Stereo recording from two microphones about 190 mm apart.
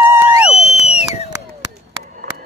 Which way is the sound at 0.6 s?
35° left (ahead or behind).